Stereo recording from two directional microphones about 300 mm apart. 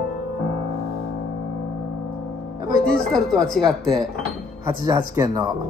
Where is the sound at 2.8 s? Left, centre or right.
Centre.